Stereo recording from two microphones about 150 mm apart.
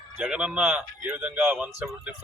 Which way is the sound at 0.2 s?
5° right (ahead or behind).